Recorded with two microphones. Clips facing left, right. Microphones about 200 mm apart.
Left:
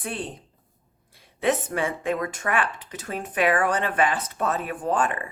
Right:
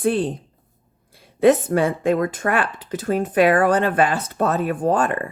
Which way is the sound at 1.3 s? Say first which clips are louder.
Right 9 dB; 35° right (ahead or behind).